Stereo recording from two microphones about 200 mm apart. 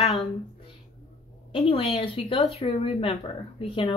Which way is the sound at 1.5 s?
30° left (ahead or behind).